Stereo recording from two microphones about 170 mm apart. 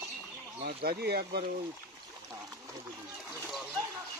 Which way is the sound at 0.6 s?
70° right (ahead or behind).